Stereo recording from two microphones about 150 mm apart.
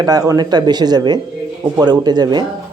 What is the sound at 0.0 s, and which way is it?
A man's voice, 25° right (ahead or behind).